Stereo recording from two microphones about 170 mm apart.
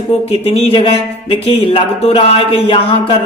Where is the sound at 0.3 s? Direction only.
35° left (ahead or behind).